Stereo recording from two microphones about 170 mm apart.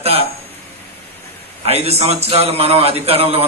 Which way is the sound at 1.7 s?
40° right (ahead or behind).